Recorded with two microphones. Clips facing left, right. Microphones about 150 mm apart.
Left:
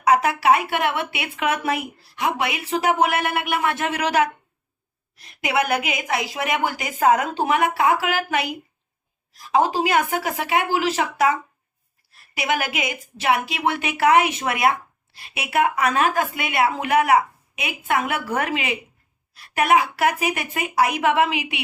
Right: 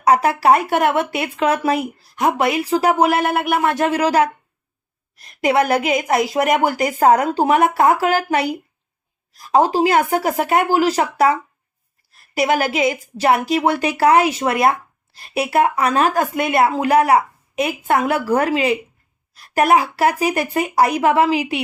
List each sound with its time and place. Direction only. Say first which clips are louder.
0.0 s speech: right 3 dB; 35° right (ahead or behind)